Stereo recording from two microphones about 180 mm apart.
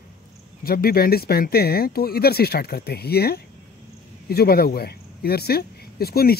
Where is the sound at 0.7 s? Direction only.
55° left (ahead or behind).